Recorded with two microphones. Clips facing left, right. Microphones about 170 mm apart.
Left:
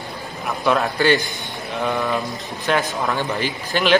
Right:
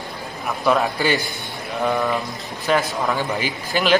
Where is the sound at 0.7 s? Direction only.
5° right (ahead or behind).